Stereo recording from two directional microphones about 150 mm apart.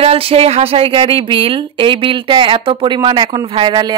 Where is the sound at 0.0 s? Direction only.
40° right (ahead or behind).